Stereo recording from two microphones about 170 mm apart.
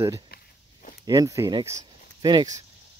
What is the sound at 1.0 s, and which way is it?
Speech, 20° right (ahead or behind).